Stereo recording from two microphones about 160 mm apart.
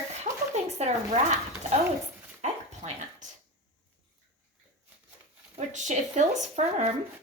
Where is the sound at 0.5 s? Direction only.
45° right (ahead or behind).